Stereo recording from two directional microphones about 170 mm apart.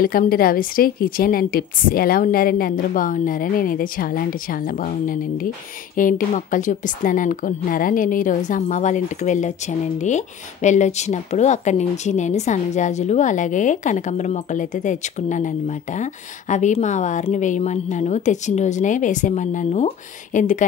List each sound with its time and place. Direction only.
0.0 s a woman's voice: 60° left (ahead or behind)